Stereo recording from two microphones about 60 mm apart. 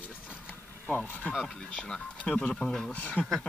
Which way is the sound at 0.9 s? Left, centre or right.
Left.